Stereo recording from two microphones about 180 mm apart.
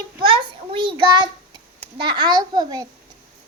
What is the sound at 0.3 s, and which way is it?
Child singing, 30° right (ahead or behind).